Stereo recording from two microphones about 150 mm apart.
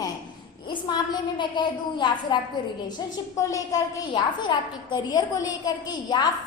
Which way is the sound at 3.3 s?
20° left (ahead or behind).